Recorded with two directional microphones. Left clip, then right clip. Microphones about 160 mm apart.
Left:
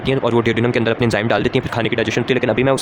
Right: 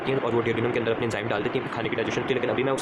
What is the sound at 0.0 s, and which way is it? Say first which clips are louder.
Speech: left 8 dB; 90° left.